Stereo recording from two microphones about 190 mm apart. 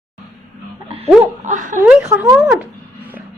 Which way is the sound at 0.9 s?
30° right (ahead or behind).